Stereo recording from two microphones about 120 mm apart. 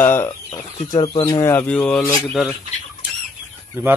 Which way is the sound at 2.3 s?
Centre (ahead or behind).